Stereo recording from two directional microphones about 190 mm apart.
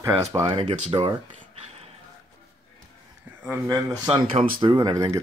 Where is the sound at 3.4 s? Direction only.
15° right (ahead or behind).